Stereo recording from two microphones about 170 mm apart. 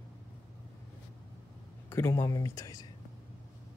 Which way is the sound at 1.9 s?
15° left (ahead or behind).